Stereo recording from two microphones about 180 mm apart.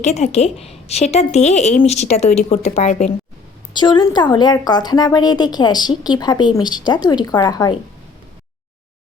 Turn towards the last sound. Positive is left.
turn(degrees=20)  # may be behind; listen again after turning